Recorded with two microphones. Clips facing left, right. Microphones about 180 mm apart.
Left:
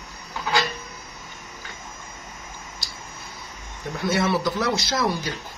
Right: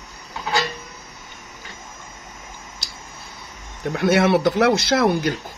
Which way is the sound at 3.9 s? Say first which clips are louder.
Right 6 dB; 65° right (ahead or behind).